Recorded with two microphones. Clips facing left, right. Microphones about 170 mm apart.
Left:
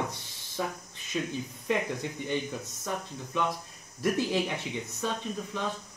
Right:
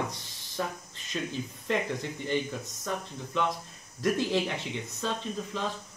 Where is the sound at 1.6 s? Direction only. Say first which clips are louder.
Even; 15° left (ahead or behind).